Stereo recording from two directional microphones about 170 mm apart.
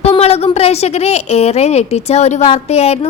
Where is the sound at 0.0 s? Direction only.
40° left (ahead or behind).